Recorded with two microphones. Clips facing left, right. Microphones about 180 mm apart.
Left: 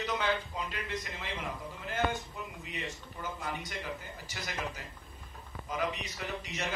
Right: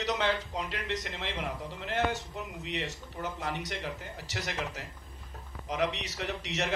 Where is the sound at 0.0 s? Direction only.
80° right.